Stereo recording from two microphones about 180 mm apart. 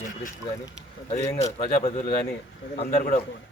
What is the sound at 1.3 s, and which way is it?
Speech, 35° left (ahead or behind).